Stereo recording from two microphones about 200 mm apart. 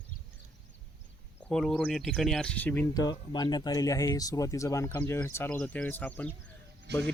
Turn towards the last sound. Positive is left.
turn(degrees=-55)  # may be behind; listen again after turning